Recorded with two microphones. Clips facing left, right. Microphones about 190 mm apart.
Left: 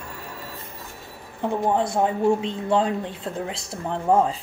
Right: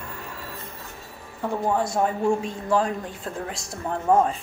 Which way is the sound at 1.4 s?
25° left (ahead or behind).